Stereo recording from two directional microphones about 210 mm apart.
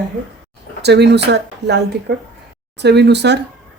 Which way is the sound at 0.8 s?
55° right (ahead or behind).